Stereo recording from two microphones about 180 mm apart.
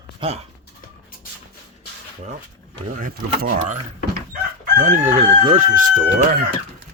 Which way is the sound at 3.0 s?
50° right (ahead or behind).